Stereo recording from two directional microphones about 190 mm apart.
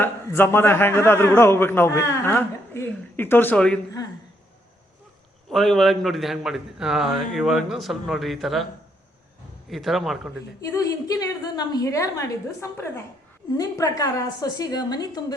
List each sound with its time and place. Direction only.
0.0 s a man's voice: 10° left (ahead or behind)
5.5 s a man's voice: centre (ahead or behind)
9.6 s a man's voice: centre (ahead or behind)
10.6 s a man's voice: 20° left (ahead or behind)